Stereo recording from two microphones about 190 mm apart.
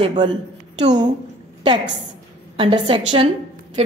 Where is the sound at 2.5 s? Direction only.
25° right (ahead or behind).